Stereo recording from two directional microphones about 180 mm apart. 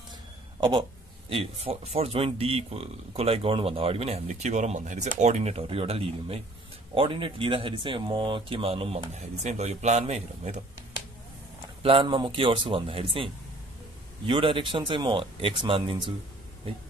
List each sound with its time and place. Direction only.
0.6 s speech: 25° right (ahead or behind)
11.8 s speech: 30° right (ahead or behind)